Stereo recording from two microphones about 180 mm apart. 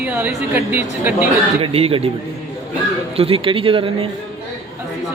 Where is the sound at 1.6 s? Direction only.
35° right (ahead or behind).